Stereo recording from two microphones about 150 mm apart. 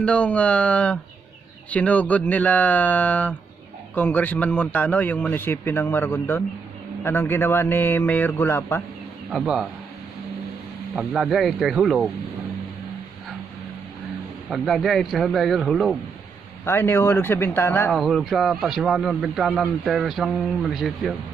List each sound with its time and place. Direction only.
0.0 s a man's voice: 10° left (ahead or behind)
9.3 s a man's voice: centre (ahead or behind)
11.0 s a man's voice: 5° right (ahead or behind)
14.5 s a man's voice: centre (ahead or behind)
16.6 s a man's voice: 15° left (ahead or behind)
17.9 s a man's voice: centre (ahead or behind)